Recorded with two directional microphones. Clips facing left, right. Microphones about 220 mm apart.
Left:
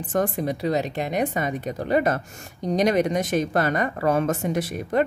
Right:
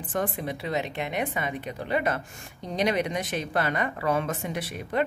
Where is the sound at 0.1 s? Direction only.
40° left (ahead or behind).